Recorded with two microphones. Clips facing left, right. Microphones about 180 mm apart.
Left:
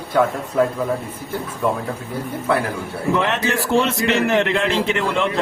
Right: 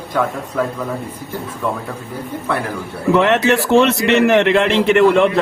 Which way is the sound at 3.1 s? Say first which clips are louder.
Right 8 dB; 75° right (ahead or behind).